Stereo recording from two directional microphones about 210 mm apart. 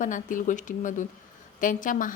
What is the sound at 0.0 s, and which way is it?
A woman's voice, 40° left (ahead or behind).